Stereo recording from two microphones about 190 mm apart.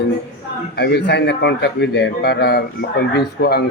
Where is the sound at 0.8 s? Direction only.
60° left (ahead or behind).